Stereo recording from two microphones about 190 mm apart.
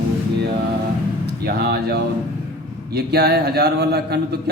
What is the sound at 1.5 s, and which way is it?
A man's voice, 55° right (ahead or behind).